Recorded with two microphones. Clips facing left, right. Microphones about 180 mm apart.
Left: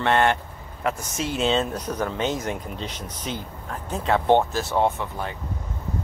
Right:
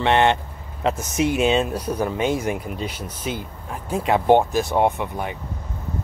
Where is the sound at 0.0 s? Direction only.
20° right (ahead or behind).